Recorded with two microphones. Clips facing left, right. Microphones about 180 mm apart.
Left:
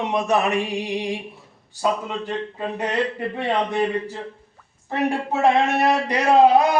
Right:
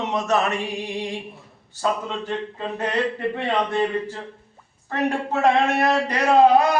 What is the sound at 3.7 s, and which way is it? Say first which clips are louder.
A man's voice: even; 15° left (ahead or behind).